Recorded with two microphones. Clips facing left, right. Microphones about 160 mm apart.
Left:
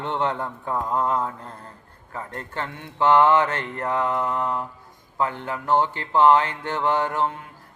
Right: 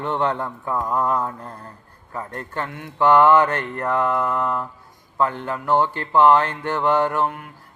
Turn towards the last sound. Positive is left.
turn(degrees=20)  # may be behind; listen again after turning